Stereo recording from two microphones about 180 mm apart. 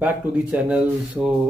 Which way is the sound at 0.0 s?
5° right (ahead or behind).